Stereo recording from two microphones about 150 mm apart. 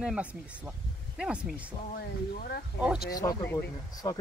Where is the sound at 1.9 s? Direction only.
90° left.